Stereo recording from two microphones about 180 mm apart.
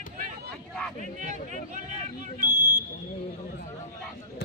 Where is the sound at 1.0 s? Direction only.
40° right (ahead or behind).